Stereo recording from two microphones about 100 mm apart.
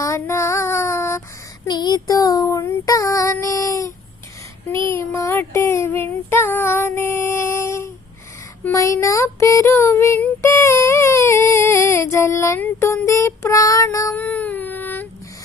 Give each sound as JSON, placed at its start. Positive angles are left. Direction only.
{"t": 0.0, "sound": "female singing", "side_deg": 30}
{"t": 1.6, "sound": "child singing", "side_deg": 45}
{"t": 12.5, "sound": "music", "side_deg": 20}
{"t": 13.1, "sound": "child singing", "side_deg": 30}
{"t": 14.2, "sound": "a sound", "side_deg": 15}